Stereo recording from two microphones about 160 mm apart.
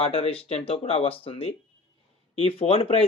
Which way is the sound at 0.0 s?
40° left (ahead or behind).